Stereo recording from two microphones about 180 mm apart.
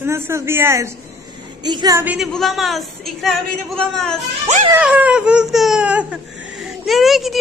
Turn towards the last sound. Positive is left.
turn(degrees=0)  # may be behind; listen again after turning